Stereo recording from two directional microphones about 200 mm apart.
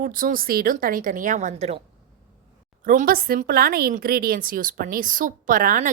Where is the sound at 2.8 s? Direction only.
40° right (ahead or behind).